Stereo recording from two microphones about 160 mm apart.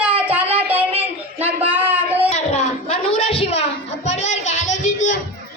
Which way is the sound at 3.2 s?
35° left (ahead or behind).